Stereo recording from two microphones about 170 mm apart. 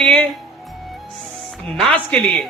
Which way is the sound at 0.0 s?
5° left (ahead or behind).